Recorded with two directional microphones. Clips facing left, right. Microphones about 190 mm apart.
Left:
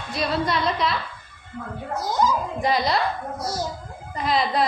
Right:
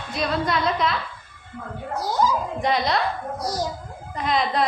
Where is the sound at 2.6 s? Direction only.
Centre (ahead or behind).